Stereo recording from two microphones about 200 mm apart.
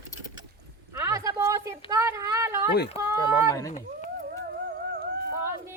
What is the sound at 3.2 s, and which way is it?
Speech, 15° left (ahead or behind).